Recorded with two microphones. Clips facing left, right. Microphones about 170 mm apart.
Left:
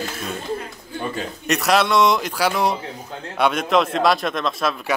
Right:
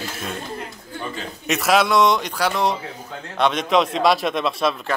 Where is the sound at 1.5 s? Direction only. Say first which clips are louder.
Even; centre (ahead or behind).